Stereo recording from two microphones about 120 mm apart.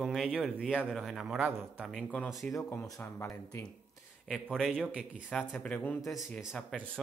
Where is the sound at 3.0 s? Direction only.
15° left (ahead or behind).